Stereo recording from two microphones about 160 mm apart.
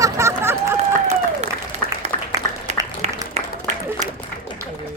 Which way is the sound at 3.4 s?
45° right (ahead or behind).